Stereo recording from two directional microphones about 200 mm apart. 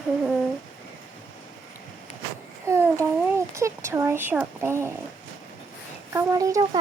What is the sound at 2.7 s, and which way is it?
Babbling, 15° right (ahead or behind).